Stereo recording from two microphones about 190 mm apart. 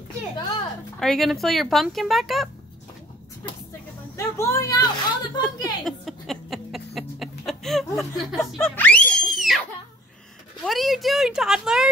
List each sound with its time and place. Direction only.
0.4 s a sound: 25° left (ahead or behind)
0.9 s speech: centre (ahead or behind)
4.2 s speech: 15° left (ahead or behind)
5.9 s a sound: centre (ahead or behind)
8.5 s screaming: 5° left (ahead or behind)
10.6 s speech: centre (ahead or behind)